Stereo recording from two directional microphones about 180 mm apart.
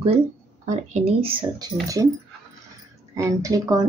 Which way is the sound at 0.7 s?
40° right (ahead or behind).